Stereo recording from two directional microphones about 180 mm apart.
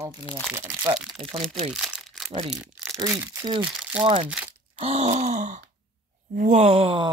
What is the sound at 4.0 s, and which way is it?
Speech, 25° right (ahead or behind).